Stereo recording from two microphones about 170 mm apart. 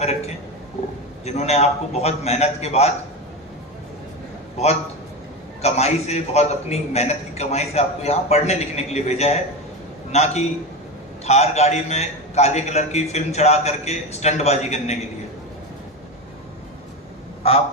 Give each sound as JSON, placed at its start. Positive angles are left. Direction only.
{"t": 1.2, "sound": "a man's voice", "side_deg": 40}
{"t": 4.5, "sound": "a man's voice", "side_deg": 40}